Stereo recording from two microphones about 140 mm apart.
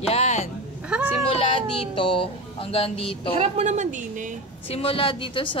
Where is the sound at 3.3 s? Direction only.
50° right (ahead or behind); by 4.3 s 65° right (ahead or behind).